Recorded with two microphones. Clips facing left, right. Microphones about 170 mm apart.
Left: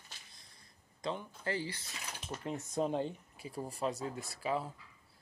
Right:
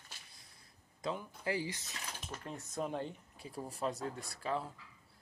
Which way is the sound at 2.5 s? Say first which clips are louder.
Left 5 dB; 25° left (ahead or behind).